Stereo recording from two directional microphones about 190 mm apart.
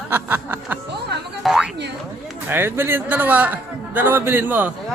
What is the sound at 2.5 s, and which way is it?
A man's voice, 10° right (ahead or behind).